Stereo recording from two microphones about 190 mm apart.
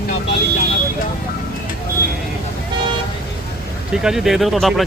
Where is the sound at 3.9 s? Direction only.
5° right (ahead or behind).